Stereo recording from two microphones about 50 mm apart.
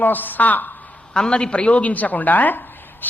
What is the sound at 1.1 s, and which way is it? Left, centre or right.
Speech, centre.